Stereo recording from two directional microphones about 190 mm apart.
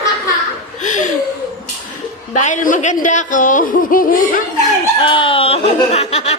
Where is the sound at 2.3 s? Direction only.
40° left (ahead or behind).